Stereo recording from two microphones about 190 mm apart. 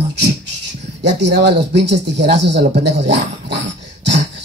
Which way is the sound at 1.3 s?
60° right (ahead or behind).